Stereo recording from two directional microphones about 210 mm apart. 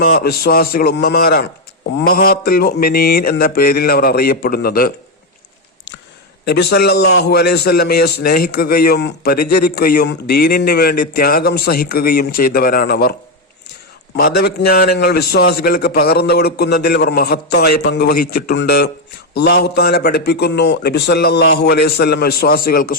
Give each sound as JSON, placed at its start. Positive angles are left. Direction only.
{"t": 0.0, "sound": "a man's voice", "side_deg": 50}
{"t": 6.4, "sound": "a man's voice", "side_deg": 50}
{"t": 14.2, "sound": "a man's voice", "side_deg": 45}